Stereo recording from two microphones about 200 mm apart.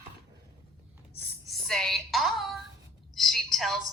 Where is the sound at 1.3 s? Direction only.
Centre (ahead or behind).